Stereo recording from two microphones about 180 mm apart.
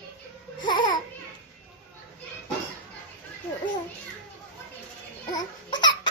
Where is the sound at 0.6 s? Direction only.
25° left (ahead or behind).